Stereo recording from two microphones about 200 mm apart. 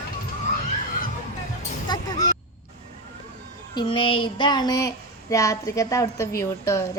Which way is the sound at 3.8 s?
25° left (ahead or behind).